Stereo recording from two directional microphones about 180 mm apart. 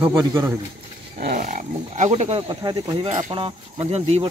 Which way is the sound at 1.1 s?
50° right (ahead or behind).